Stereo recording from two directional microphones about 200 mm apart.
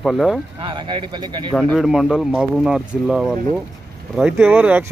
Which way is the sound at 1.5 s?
5° left (ahead or behind).